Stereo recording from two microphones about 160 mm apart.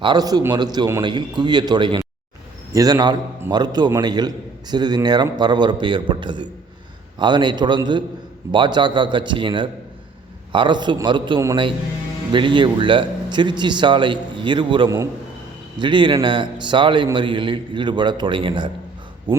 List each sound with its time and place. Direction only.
0.0 s a man's voice: 25° right (ahead or behind)